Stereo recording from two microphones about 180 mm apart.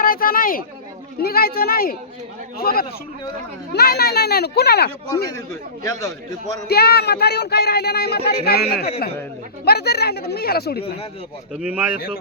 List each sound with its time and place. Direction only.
0.0 s a sound: 55° left (ahead or behind)
1.2 s speech: 60° left (ahead or behind)
6.7 s speech: 60° left (ahead or behind)
11.5 s speech: 10° right (ahead or behind)